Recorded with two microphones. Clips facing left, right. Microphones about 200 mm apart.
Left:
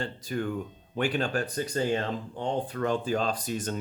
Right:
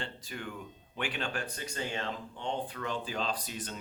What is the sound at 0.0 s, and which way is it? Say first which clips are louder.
Speech: left 9 dB; 40° left (ahead or behind).